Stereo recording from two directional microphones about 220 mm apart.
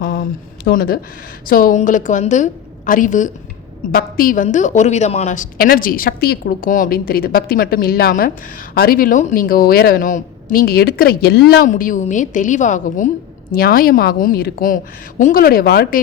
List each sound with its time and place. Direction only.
0.0 s a woman's voice: 40° left (ahead or behind)